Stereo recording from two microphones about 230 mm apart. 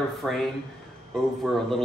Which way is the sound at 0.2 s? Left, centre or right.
Centre.